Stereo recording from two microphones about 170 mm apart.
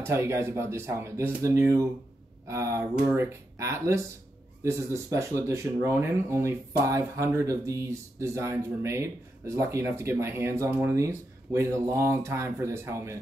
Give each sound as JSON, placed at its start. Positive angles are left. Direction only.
{"t": 0.0, "sound": "speech", "side_deg": -15}